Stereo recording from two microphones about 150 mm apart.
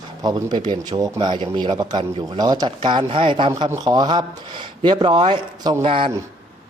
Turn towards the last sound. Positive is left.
turn(degrees=-35)  # may be behind; listen again after turning